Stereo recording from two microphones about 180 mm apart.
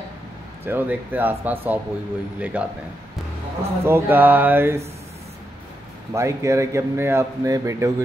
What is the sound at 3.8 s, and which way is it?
A man's voice, 10° right (ahead or behind).